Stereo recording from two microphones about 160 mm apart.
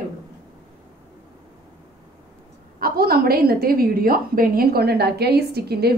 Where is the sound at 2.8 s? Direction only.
70° right (ahead or behind).